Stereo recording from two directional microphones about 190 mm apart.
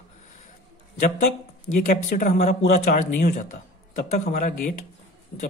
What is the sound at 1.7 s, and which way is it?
A man's voice, 45° left (ahead or behind).